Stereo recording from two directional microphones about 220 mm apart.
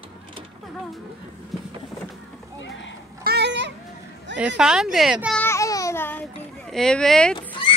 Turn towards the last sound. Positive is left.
turn(degrees=20)  # may be behind; listen again after turning